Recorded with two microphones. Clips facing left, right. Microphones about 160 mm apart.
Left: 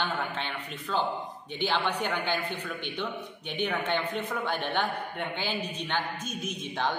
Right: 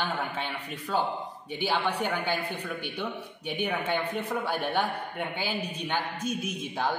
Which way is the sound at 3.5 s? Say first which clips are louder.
Even; 10° right (ahead or behind).